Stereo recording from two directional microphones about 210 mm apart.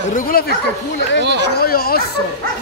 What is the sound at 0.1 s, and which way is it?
Speech, 45° left (ahead or behind).